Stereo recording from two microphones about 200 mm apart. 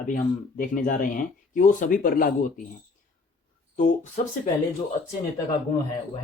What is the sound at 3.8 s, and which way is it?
Speech, 35° left (ahead or behind).